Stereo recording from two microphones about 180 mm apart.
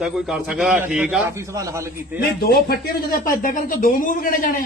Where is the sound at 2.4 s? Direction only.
55° left (ahead or behind).